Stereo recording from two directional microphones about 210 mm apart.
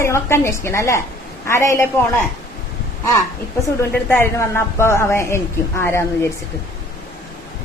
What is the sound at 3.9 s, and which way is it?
A woman's voice, 10° left (ahead or behind).